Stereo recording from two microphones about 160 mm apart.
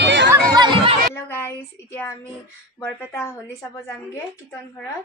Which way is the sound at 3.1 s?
20° left (ahead or behind).